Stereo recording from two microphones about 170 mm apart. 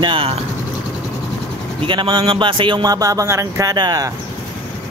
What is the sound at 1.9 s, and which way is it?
Music, 30° right (ahead or behind).